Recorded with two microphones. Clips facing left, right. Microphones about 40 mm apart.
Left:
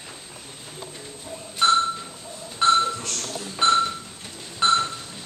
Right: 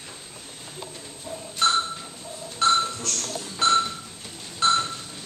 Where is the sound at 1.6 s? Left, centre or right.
Centre.